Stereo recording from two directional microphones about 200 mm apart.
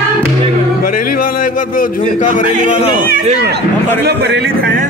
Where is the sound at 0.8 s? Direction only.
45° left (ahead or behind).